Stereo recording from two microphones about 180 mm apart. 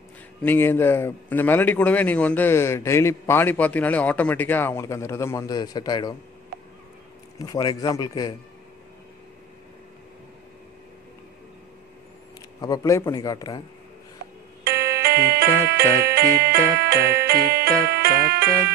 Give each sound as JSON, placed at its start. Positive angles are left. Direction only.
{"t": 0.4, "sound": "a man's voice", "side_deg": 10}
{"t": 7.3, "sound": "a man's voice", "side_deg": 20}
{"t": 12.6, "sound": "a man's voice", "side_deg": 20}
{"t": 14.7, "sound": "music", "side_deg": -65}